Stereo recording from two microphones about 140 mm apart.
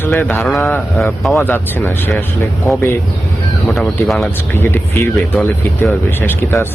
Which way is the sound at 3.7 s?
5° left (ahead or behind).